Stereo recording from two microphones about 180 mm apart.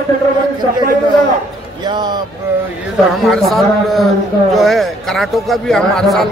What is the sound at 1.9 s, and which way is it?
Speech, 25° right (ahead or behind).